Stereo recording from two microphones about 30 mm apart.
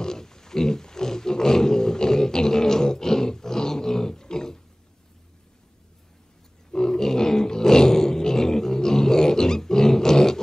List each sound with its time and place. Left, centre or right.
0.0 s roaring cats: left
6.7 s roar: centre